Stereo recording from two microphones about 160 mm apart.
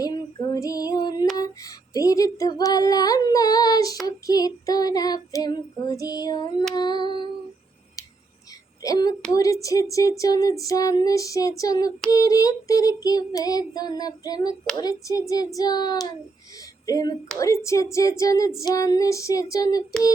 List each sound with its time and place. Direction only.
0.0 s female singing: 25° left (ahead or behind)
1.9 s child singing: 20° left (ahead or behind)
8.8 s child singing: 20° left (ahead or behind)